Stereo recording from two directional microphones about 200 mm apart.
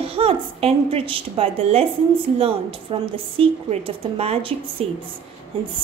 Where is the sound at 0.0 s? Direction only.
30° right (ahead or behind).